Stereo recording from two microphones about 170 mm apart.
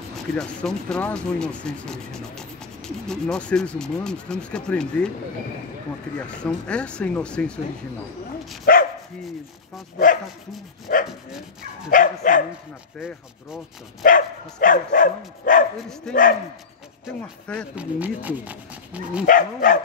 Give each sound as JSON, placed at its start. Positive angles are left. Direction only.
{"t": 0.1, "sound": "speech", "side_deg": 5}
{"t": 6.1, "sound": "speech", "side_deg": 5}
{"t": 8.7, "sound": "dog", "side_deg": 55}
{"t": 10.9, "sound": "speech", "side_deg": 50}
{"t": 14.0, "sound": "speech", "side_deg": 50}
{"t": 16.1, "sound": "speech", "side_deg": 0}
{"t": 17.7, "sound": "speech", "side_deg": -10}
{"t": 19.2, "sound": "speech", "side_deg": 55}